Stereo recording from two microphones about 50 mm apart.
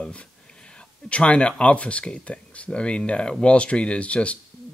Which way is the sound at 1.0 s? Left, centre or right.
Left.